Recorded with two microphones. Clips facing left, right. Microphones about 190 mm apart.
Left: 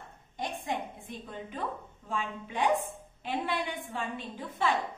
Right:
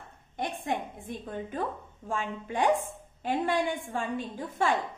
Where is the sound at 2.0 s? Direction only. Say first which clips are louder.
Right 3 dB; 45° right (ahead or behind).